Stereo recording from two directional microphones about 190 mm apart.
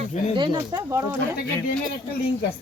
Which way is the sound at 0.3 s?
25° right (ahead or behind).